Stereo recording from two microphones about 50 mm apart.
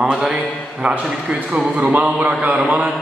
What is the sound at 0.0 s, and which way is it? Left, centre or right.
Speech, centre.